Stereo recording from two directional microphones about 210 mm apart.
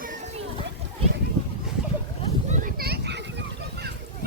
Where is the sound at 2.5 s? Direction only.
45° right (ahead or behind).